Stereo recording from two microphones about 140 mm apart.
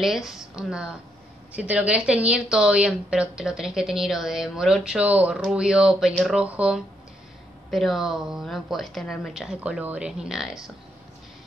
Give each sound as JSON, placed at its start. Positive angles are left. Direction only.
{"t": 0.0, "sound": "a woman's voice", "side_deg": 0}